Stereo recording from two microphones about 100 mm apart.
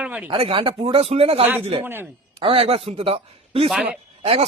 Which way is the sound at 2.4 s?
70° right (ahead or behind).